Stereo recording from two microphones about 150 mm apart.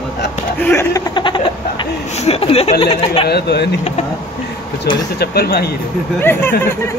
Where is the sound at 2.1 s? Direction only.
40° left (ahead or behind).